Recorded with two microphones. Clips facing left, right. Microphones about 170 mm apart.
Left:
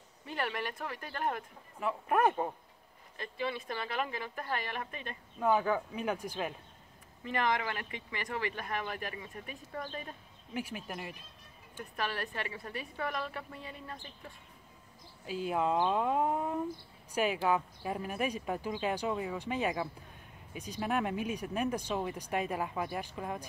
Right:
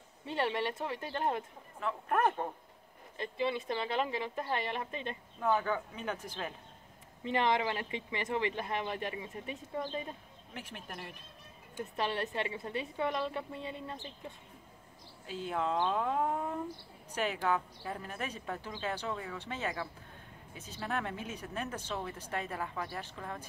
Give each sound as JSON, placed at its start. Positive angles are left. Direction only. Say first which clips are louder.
{"t": 0.2, "sound": "speech", "louder": "right 3 dB", "side_deg": -25}
{"t": 1.8, "sound": "speech", "louder": "left 2 dB", "side_deg": 10}
{"t": 3.2, "sound": "speech", "louder": "right 3 dB", "side_deg": -25}
{"t": 5.4, "sound": "speech", "louder": "left 2 dB", "side_deg": 10}
{"t": 7.2, "sound": "speech", "louder": "right 2 dB", "side_deg": -25}
{"t": 10.5, "sound": "speech", "louder": "left 6 dB", "side_deg": 10}
{"t": 11.8, "sound": "speech", "louder": "right 3 dB", "side_deg": -25}
{"t": 15.2, "sound": "speech", "louder": "left 3 dB", "side_deg": 10}